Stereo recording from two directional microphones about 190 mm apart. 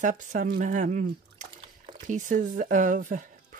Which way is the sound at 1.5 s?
25° right (ahead or behind).